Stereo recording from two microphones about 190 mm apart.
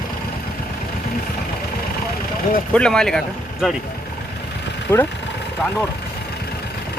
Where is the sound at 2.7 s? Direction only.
5° left (ahead or behind).